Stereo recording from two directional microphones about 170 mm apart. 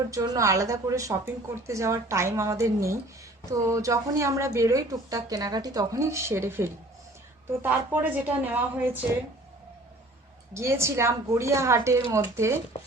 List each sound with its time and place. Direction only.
0.1 s a woman's voice: 20° right (ahead or behind)
10.5 s a woman's voice: 15° right (ahead or behind)
12.7 s speech: 35° left (ahead or behind)